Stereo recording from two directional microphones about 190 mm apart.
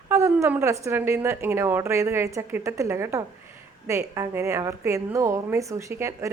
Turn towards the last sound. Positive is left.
turn(degrees=-15)  # may be behind; listen again after turning